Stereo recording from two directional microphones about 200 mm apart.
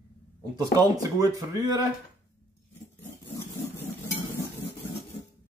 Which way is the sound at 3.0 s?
10° left (ahead or behind).